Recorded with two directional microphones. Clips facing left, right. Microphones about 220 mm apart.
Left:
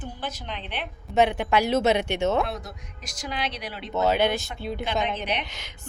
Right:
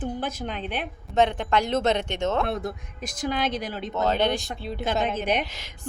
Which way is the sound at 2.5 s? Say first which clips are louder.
Right 6 dB; 55° right (ahead or behind).